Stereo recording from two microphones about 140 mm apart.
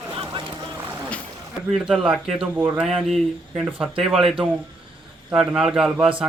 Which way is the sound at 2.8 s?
Centre (ahead or behind).